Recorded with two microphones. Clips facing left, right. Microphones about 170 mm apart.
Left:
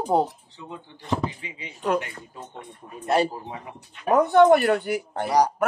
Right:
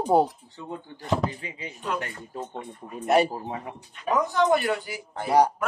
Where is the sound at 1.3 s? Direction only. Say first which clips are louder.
Right 2 dB; 40° right (ahead or behind).